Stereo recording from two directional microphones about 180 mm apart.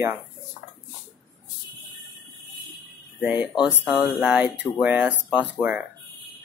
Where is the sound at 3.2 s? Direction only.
5° right (ahead or behind).